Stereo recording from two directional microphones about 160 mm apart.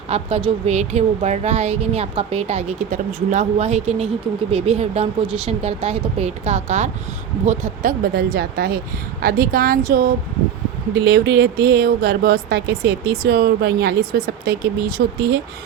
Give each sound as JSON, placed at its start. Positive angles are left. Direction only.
{"t": 0.1, "sound": "a woman's voice", "side_deg": -40}
{"t": 11.0, "sound": "speech", "side_deg": -90}